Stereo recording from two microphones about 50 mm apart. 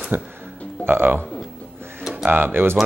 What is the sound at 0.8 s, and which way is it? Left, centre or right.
Speech, right.